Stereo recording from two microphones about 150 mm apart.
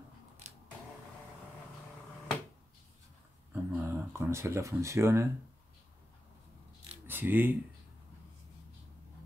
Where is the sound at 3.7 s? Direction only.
20° right (ahead or behind).